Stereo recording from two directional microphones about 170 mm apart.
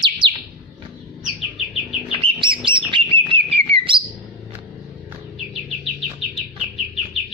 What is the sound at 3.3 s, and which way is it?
Bird, 35° right (ahead or behind).